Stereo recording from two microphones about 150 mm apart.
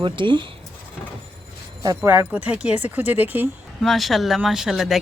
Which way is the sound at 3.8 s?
Centre (ahead or behind).